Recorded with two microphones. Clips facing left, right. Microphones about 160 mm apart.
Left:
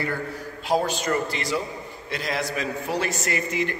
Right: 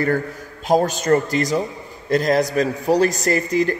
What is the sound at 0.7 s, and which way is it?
A man's voice, 45° right (ahead or behind).